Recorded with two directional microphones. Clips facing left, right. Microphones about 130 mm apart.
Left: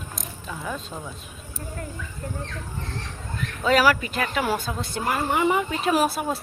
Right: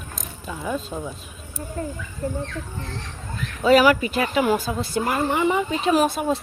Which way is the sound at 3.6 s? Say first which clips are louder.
Right 4 dB; 5° right (ahead or behind).